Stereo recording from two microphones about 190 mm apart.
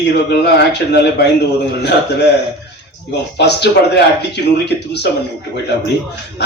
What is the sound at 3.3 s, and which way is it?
A man's voice, 60° left (ahead or behind).